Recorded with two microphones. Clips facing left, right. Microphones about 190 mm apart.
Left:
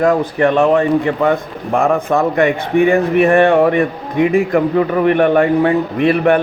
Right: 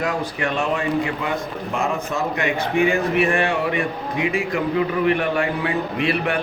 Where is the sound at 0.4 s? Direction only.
60° left (ahead or behind).